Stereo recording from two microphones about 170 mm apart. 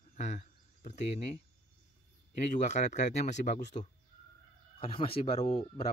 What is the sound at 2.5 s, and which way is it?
Speech, 45° left (ahead or behind).